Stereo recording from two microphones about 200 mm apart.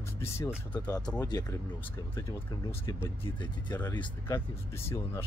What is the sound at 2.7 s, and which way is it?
Speech, 10° left (ahead or behind).